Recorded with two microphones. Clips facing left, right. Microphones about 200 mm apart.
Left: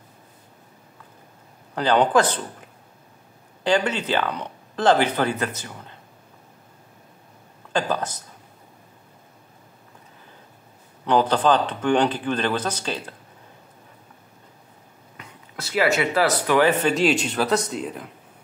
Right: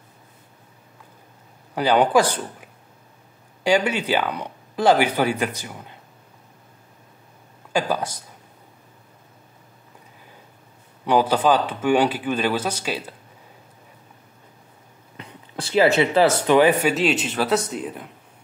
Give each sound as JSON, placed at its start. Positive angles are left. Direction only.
{"t": 1.8, "sound": "speech", "side_deg": -10}
{"t": 3.6, "sound": "speech", "side_deg": -10}
{"t": 7.7, "sound": "speech", "side_deg": -10}
{"t": 11.1, "sound": "speech", "side_deg": -10}
{"t": 15.1, "sound": "speech", "side_deg": -30}
{"t": 16.9, "sound": "speech", "side_deg": 0}